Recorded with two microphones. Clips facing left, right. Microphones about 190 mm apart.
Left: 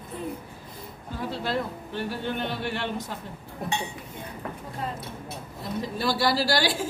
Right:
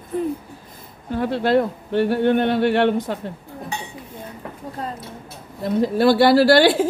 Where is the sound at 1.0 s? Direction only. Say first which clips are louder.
Right 11 dB; 65° right (ahead or behind).